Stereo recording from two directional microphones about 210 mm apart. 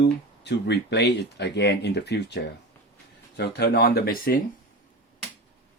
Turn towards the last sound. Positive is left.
turn(degrees=45)  # may be behind; listen again after turning